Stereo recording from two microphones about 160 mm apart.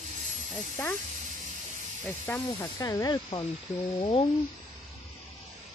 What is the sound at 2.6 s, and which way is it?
Speech, 20° left (ahead or behind).